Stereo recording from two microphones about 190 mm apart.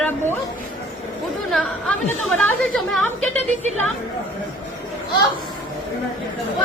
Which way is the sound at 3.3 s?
35° right (ahead or behind).